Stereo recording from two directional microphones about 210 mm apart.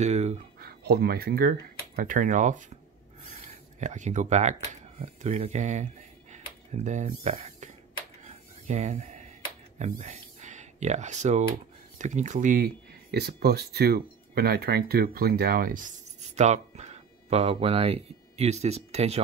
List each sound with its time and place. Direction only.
0.0 s speech: 30° right (ahead or behind)
0.6 s speech: 50° right (ahead or behind)
6.3 s a sound: 35° right (ahead or behind)
8.2 s filing: 35° right (ahead or behind)
9.8 s speech: 35° right (ahead or behind)